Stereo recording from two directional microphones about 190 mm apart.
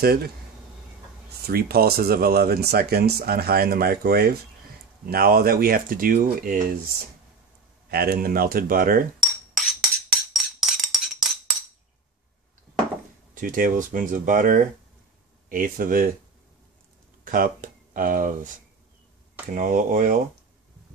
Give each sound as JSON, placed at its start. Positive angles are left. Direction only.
{"t": 0.0, "sound": "speech", "side_deg": -55}
{"t": 1.4, "sound": "speech", "side_deg": -55}
{"t": 7.9, "sound": "speech", "side_deg": -55}
{"t": 9.5, "sound": "music", "side_deg": 0}
{"t": 13.3, "sound": "speech", "side_deg": -45}
{"t": 17.2, "sound": "speech", "side_deg": -45}
{"t": 19.5, "sound": "speech", "side_deg": -40}